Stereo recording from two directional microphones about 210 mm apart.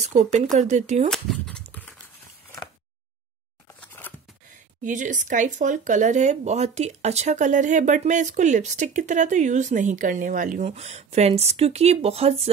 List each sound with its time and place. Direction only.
0.0 s speech: 35° right (ahead or behind)
1.1 s a sound: 5° left (ahead or behind)
3.8 s scissors: 10° left (ahead or behind)
4.8 s speech: 35° right (ahead or behind)